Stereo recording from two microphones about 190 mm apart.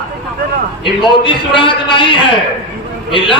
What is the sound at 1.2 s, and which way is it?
A man's voice, 25° left (ahead or behind).